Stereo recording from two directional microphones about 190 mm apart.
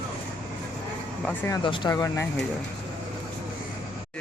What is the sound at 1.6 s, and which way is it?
Speech, 25° left (ahead or behind).